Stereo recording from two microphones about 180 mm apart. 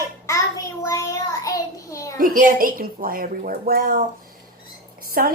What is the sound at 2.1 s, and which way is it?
Speech, 50° right (ahead or behind).